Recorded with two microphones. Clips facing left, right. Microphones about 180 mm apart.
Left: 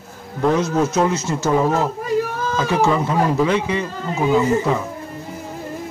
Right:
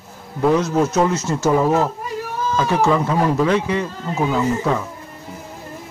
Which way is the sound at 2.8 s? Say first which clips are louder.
Even; 5° left (ahead or behind).